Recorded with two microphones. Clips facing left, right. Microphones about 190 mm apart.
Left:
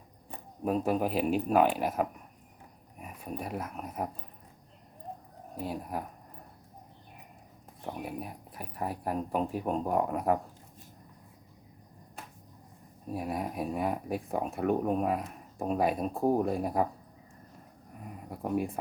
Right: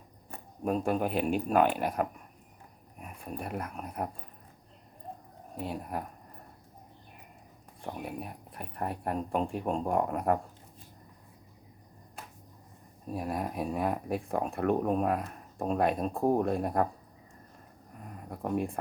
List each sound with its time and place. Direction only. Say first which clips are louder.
0.6 s speech: left 1 dB; 5° left (ahead or behind)
5.5 s speech: even; centre (ahead or behind)
7.8 s speech: left 1 dB; centre (ahead or behind)
13.1 s speech: even; centre (ahead or behind)
18.0 s a sound: even; 5° left (ahead or behind)